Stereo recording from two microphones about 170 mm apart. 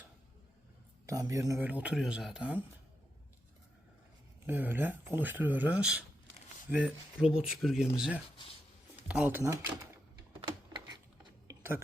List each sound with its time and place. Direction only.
1.0 s speech: 20° right (ahead or behind)
4.4 s speech: 10° right (ahead or behind)
10.7 s a sound: 25° right (ahead or behind)